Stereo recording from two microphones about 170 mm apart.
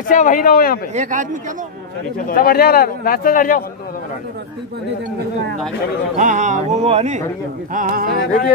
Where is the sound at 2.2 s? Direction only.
60° left (ahead or behind).